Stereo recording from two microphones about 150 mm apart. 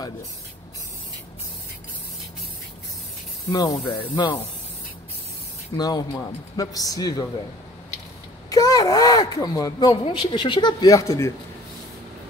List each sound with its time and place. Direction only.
3.4 s speech: 25° left (ahead or behind)
5.8 s speech: 25° left (ahead or behind)
8.5 s speech: 25° left (ahead or behind)